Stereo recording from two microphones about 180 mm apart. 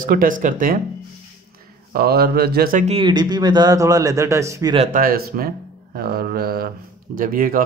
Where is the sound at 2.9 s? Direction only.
30° right (ahead or behind).